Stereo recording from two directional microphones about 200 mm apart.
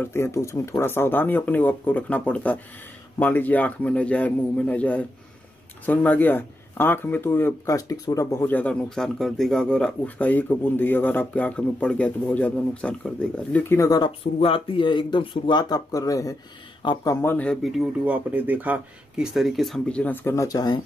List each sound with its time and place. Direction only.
0.0 s speech: 10° left (ahead or behind)